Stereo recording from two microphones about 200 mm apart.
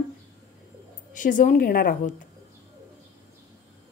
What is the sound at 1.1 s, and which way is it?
A woman's voice, 40° left (ahead or behind).